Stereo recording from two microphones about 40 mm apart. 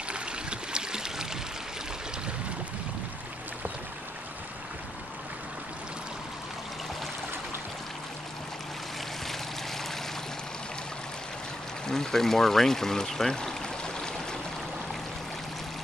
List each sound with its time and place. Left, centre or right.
0.1 s stream: right
11.9 s speech: centre